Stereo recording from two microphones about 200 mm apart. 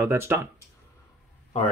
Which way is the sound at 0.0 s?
10° right (ahead or behind).